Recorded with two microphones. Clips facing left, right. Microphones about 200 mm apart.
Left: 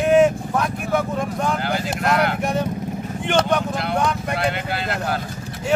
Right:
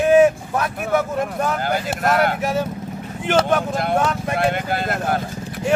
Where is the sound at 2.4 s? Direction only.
5° right (ahead or behind).